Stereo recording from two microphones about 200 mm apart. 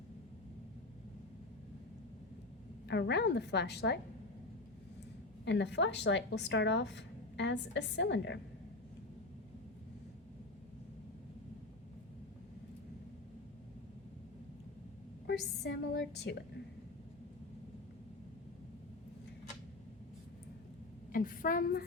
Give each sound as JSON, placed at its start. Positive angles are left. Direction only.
{"t": 2.8, "sound": "speech", "side_deg": 55}
{"t": 5.5, "sound": "speech", "side_deg": 60}
{"t": 15.3, "sound": "speech", "side_deg": 55}
{"t": 21.1, "sound": "a woman's voice", "side_deg": 45}